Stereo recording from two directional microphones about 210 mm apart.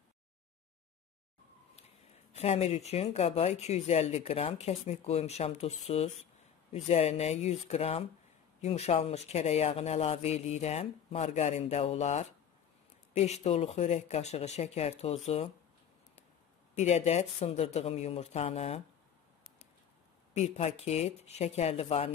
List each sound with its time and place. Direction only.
2.3 s speech: 30° left (ahead or behind)
16.7 s speech: 30° left (ahead or behind)
20.3 s speech: 30° left (ahead or behind)